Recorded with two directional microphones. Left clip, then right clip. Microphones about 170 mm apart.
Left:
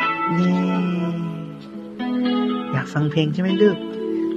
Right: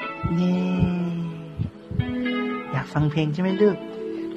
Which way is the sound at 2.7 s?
10° left (ahead or behind).